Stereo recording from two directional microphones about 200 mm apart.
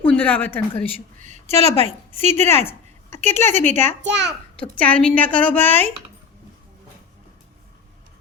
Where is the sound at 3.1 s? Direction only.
35° right (ahead or behind).